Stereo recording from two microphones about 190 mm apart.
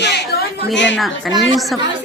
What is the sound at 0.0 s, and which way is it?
Chatter, 65° left (ahead or behind).